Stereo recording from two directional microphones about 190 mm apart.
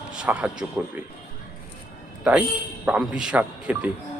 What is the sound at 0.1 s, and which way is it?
Speech, 5° right (ahead or behind).